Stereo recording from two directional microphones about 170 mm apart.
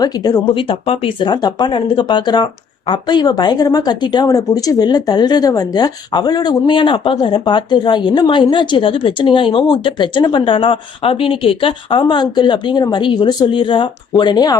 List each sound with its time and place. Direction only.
0.0 s speech: 25° left (ahead or behind)